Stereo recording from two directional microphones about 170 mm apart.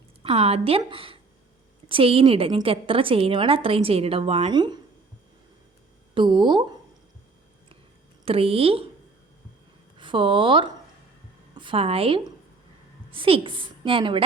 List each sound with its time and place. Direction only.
0.2 s a woman's voice: 35° right (ahead or behind)
6.1 s speech: 30° right (ahead or behind)
8.2 s a woman's voice: 35° right (ahead or behind)
10.0 s a woman's voice: 30° right (ahead or behind)